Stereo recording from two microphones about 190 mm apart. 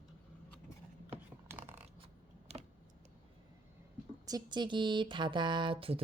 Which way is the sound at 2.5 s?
35° right (ahead or behind).